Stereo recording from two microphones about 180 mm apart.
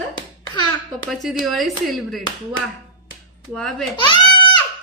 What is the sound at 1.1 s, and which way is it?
A woman's voice, centre (ahead or behind).